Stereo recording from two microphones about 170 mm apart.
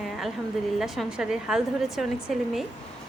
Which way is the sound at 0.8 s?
Centre (ahead or behind).